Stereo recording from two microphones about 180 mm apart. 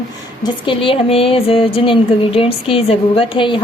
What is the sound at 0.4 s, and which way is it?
A woman's voice, 30° left (ahead or behind).